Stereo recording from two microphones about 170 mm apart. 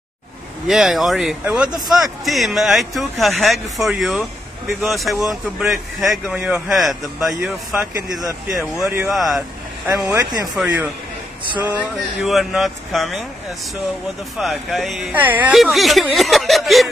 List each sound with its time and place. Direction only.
0.7 s speech: centre (ahead or behind)
7.7 s speech: 20° right (ahead or behind)
8.5 s speech: centre (ahead or behind)
8.8 s speech: 10° right (ahead or behind)
9.1 s speech: centre (ahead or behind)
9.8 s speech: 20° right (ahead or behind)
10.5 s speech: 5° right (ahead or behind)
14.4 s speech: centre (ahead or behind)